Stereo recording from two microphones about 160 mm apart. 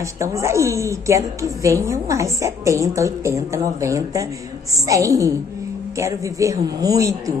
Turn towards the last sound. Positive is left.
turn(degrees=-20)  # may be behind; listen again after turning